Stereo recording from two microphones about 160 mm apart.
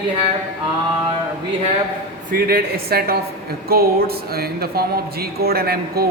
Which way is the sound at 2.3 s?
70° right (ahead or behind).